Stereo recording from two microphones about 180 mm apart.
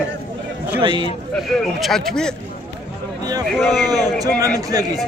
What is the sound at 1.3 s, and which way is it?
A man's voice, centre (ahead or behind).